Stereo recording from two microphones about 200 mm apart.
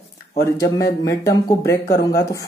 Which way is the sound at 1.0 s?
15° left (ahead or behind).